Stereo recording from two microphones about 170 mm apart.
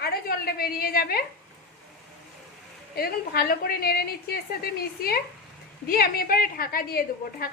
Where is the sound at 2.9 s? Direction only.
60° left (ahead or behind).